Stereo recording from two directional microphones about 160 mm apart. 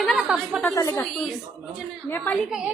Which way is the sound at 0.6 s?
20° left (ahead or behind).